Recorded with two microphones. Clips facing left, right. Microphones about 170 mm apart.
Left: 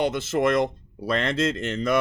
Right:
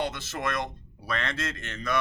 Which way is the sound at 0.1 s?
25° left (ahead or behind).